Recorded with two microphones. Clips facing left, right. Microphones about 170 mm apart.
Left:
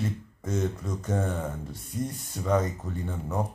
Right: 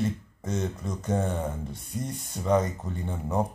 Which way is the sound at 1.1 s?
15° right (ahead or behind).